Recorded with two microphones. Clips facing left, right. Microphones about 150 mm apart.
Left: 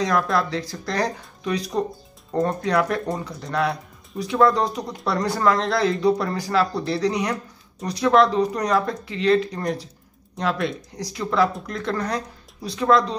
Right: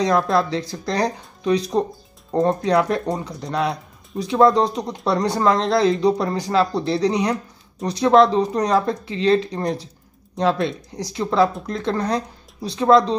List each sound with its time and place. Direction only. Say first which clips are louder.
0.0 s speech: right 3 dB; 25° right (ahead or behind)